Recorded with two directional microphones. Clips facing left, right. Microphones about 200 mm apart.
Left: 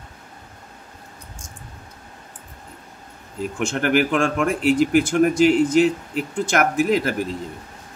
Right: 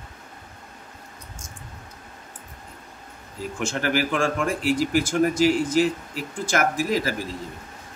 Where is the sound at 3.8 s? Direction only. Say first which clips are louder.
Left 5 dB; 60° left (ahead or behind).